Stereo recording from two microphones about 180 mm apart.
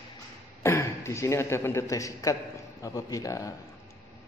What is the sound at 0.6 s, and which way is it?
A man's voice, 15° left (ahead or behind).